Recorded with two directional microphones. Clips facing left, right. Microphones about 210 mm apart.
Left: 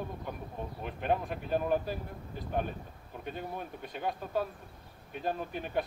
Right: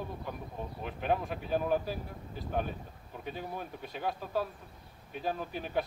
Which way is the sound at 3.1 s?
Centre (ahead or behind).